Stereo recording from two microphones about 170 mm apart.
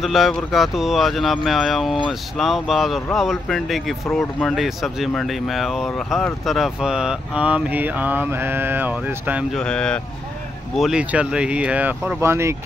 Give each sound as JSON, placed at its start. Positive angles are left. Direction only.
{"t": 0.0, "sound": "speech", "side_deg": 0}
{"t": 9.6, "sound": "speech", "side_deg": 5}